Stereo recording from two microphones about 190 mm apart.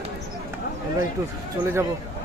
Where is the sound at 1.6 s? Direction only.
10° right (ahead or behind).